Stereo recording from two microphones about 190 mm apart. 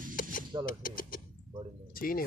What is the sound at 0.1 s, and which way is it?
Mechanisms, 45° left (ahead or behind).